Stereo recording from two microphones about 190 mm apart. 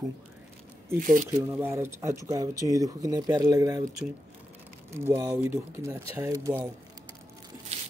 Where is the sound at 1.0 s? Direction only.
45° right (ahead or behind).